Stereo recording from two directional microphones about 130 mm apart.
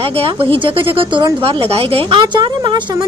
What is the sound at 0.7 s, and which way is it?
A woman's voice, 40° right (ahead or behind).